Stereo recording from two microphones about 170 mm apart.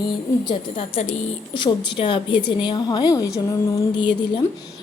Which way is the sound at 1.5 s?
25° left (ahead or behind).